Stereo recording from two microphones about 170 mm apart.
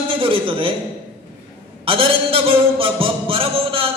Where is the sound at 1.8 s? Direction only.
30° right (ahead or behind).